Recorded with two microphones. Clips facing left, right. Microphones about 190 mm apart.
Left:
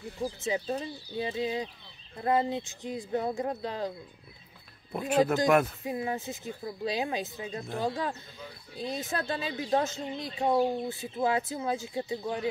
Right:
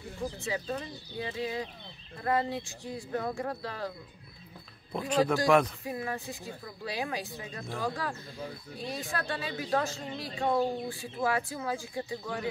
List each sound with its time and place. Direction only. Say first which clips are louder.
0.5 s speech: left 5 dB; 25° left (ahead or behind)
4.9 s speech: left 2 dB; 5° left (ahead or behind)
5.2 s speech: even; 20° left (ahead or behind)